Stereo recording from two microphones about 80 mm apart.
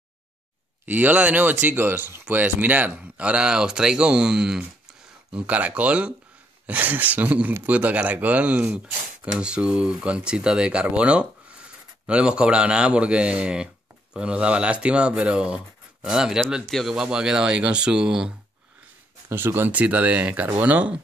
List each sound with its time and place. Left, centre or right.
0.8 s speech: right
19.2 s speech: right